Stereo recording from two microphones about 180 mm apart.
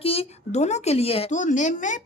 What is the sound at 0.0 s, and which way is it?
Speech, 35° left (ahead or behind).